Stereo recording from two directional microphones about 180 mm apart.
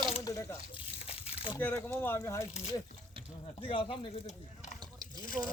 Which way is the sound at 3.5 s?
30° left (ahead or behind).